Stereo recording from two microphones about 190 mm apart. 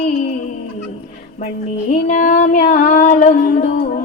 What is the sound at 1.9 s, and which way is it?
Female singing, 45° left (ahead or behind).